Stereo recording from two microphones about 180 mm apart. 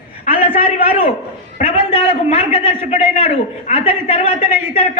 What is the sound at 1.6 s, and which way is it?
A man's voice, 30° left (ahead or behind).